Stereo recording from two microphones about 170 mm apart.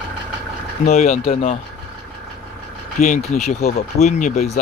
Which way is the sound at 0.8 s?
40° left (ahead or behind).